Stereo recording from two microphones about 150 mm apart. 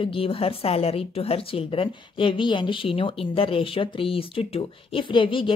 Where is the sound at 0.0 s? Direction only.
35° left (ahead or behind).